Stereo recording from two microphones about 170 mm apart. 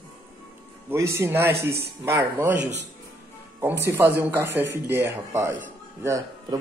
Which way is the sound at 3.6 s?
15° right (ahead or behind).